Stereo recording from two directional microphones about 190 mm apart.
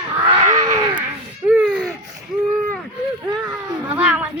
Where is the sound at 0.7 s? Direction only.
25° right (ahead or behind).